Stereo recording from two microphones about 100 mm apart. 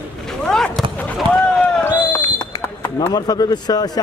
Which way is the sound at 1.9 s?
20° left (ahead or behind).